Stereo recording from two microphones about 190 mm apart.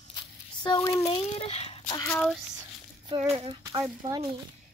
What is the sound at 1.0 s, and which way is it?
Speech, 35° left (ahead or behind).